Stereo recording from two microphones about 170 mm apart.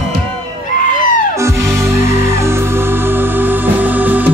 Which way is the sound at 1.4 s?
15° right (ahead or behind).